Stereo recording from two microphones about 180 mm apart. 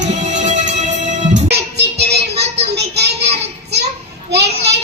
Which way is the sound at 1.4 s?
65° right (ahead or behind).